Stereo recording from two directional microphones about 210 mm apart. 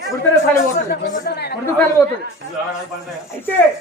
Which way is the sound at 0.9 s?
50° left (ahead or behind).